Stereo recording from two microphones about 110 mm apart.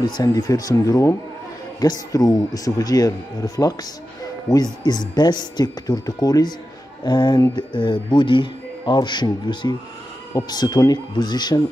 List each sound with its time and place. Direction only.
0.0 s speech: 40° left (ahead or behind)